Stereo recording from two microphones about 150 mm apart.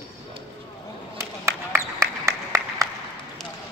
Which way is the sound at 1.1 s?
15° right (ahead or behind).